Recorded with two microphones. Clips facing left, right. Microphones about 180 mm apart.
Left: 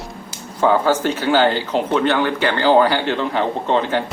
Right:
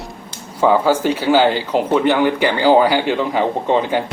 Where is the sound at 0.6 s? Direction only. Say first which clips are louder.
Right 2 dB; 10° right (ahead or behind).